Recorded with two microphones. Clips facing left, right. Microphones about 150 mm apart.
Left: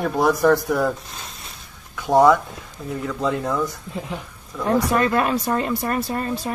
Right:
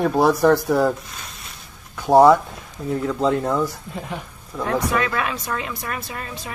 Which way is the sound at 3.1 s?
20° right (ahead or behind).